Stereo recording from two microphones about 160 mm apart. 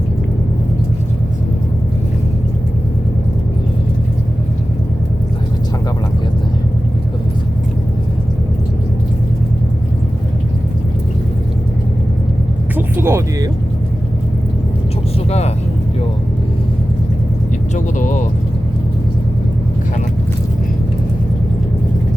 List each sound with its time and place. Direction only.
12.7 s music: 15° right (ahead or behind)
15.3 s vehicle: 40° left (ahead or behind)
17.7 s vehicle: 50° left (ahead or behind)